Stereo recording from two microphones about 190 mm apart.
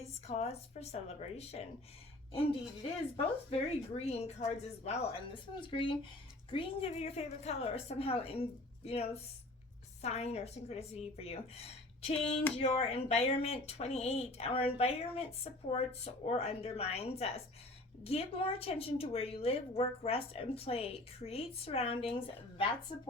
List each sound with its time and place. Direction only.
0.3 s a woman's voice: 35° left (ahead or behind)